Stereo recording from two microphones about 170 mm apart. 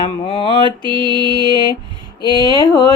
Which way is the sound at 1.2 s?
25° left (ahead or behind).